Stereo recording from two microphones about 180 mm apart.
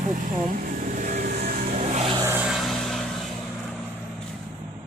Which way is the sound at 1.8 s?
40° right (ahead or behind).